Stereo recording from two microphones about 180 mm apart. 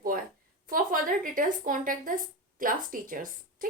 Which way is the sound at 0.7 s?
50° right (ahead or behind).